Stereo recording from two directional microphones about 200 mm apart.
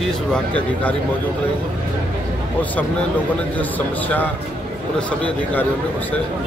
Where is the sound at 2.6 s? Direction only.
10° left (ahead or behind).